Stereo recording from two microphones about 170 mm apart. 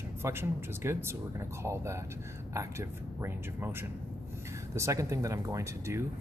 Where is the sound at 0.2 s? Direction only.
15° right (ahead or behind).